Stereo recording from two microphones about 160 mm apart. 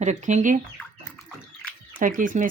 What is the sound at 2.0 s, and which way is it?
Speech, 60° right (ahead or behind).